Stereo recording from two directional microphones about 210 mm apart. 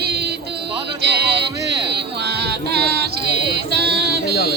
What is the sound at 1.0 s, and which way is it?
Music, 50° right (ahead or behind).